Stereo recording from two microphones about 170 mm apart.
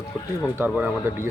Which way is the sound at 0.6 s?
10° right (ahead or behind).